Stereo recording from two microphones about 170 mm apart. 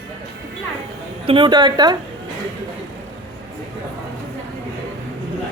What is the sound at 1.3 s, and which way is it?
Speech, 30° right (ahead or behind).